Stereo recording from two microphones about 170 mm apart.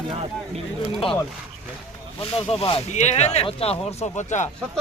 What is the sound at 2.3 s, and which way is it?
Speech, 35° left (ahead or behind).